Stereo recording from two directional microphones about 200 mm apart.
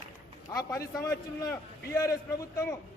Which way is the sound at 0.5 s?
15° left (ahead or behind).